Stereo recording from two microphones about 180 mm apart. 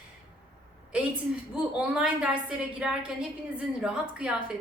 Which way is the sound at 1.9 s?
5° right (ahead or behind).